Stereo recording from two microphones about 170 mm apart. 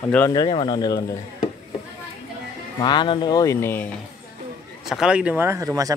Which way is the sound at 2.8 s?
25° left (ahead or behind).